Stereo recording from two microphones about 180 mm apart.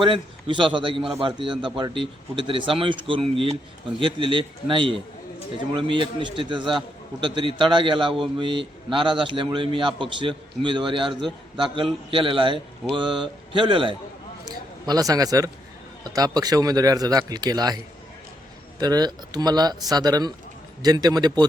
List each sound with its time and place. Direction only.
0.0 s a man's voice: 30° right (ahead or behind)
18.8 s a man's voice: 20° right (ahead or behind)